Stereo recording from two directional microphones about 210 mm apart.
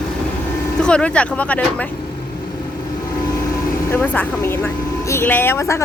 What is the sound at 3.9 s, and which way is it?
Speech, 10° left (ahead or behind).